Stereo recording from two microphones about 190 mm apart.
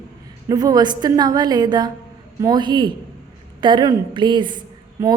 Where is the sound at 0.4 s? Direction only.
20° right (ahead or behind).